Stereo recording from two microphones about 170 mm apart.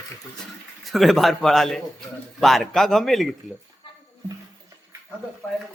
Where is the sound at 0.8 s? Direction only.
Centre (ahead or behind).